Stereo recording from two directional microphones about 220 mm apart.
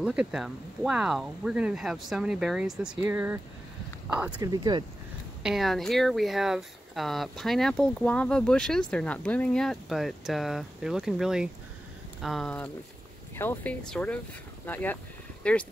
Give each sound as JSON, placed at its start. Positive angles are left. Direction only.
{"t": 0.0, "sound": "speech", "side_deg": -5}
{"t": 4.4, "sound": "speech", "side_deg": -20}
{"t": 5.4, "sound": "speech", "side_deg": 0}